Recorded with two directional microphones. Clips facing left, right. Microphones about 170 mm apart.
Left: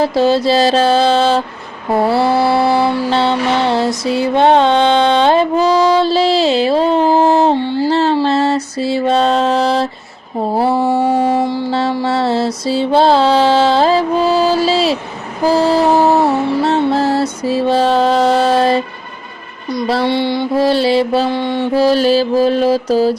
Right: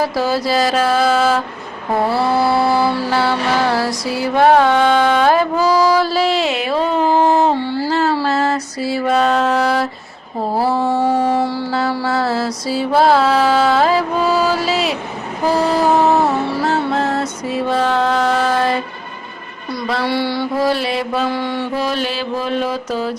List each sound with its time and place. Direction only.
0.0 s mantra: 25° left (ahead or behind)
20.1 s mantra: 20° left (ahead or behind)